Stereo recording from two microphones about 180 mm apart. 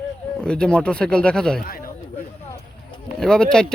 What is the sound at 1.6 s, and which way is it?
Speech, 55° left (ahead or behind).